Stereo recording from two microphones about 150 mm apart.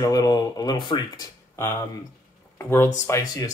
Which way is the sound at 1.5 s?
15° left (ahead or behind).